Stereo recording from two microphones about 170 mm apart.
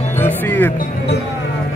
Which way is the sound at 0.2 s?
10° left (ahead or behind).